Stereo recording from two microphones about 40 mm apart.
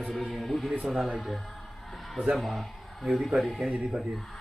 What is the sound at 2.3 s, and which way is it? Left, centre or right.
Speech, centre.